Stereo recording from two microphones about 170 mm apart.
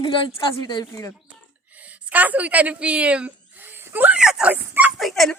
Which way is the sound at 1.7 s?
10° right (ahead or behind).